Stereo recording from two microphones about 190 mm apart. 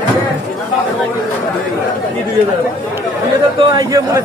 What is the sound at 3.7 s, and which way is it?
Speech, 20° right (ahead or behind).